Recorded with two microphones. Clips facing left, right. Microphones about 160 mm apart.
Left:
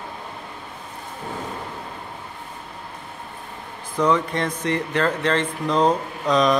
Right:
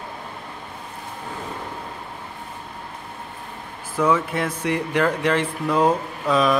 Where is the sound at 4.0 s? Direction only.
5° right (ahead or behind).